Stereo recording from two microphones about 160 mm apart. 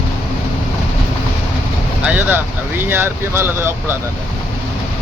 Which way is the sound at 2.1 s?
10° right (ahead or behind).